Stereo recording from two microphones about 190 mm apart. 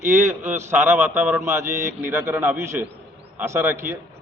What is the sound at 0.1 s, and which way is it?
A man's voice, 10° right (ahead or behind).